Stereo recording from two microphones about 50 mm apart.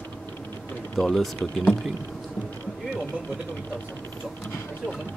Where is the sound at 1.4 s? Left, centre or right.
Left.